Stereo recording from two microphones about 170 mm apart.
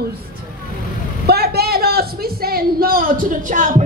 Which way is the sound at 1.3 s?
65° right (ahead or behind).